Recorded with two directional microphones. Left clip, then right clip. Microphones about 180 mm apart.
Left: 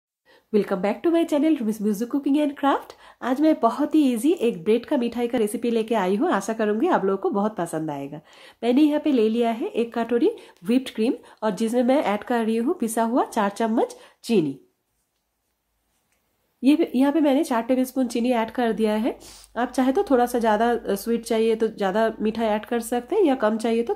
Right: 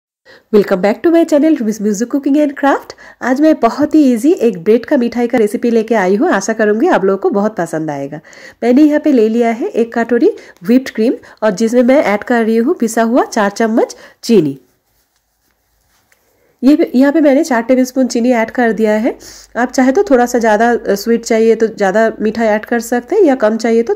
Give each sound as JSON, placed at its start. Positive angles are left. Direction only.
{"t": 0.5, "sound": "speech", "side_deg": -40}
{"t": 16.6, "sound": "speech", "side_deg": -25}